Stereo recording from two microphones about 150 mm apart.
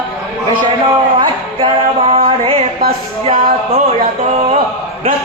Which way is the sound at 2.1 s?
40° right (ahead or behind).